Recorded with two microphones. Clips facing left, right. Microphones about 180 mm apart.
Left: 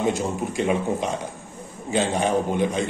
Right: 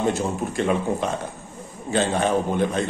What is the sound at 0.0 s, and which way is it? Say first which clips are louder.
Speech: even; 15° left (ahead or behind).